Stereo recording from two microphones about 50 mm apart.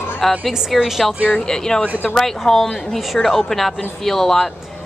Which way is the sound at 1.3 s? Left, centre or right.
Centre.